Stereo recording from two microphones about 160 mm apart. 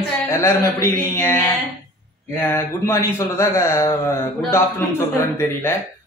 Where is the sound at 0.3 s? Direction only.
15° left (ahead or behind).